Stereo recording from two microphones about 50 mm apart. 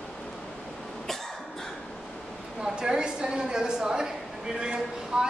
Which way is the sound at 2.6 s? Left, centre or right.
Centre.